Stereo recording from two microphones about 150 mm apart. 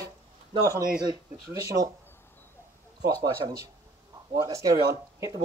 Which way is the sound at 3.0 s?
25° right (ahead or behind).